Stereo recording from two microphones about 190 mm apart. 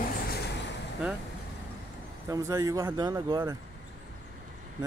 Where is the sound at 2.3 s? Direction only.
15° right (ahead or behind).